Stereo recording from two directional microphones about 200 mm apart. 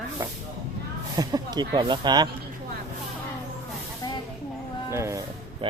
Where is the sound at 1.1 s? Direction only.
20° right (ahead or behind).